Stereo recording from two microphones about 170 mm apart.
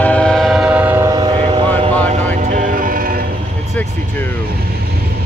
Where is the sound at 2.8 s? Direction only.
55° right (ahead or behind).